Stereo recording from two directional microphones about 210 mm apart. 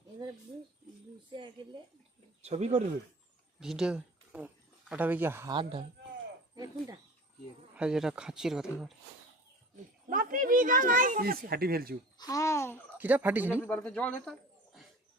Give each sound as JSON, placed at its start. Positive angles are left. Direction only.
{"t": 1.3, "sound": "a woman's voice", "side_deg": -20}
{"t": 2.4, "sound": "a child's voice", "side_deg": -30}
{"t": 3.6, "sound": "speech", "side_deg": -5}
{"t": 7.8, "sound": "speech", "side_deg": -5}
{"t": 10.1, "sound": "a child's voice", "side_deg": -40}
{"t": 12.1, "sound": "speech", "side_deg": 15}
{"t": 13.0, "sound": "speech", "side_deg": -10}
{"t": 13.7, "sound": "a man's voice", "side_deg": 5}